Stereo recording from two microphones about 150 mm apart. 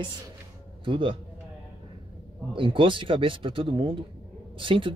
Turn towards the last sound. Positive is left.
turn(degrees=-35)  # may be behind; listen again after turning